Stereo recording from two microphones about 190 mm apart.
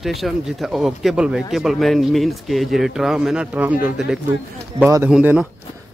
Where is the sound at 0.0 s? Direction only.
Centre (ahead or behind).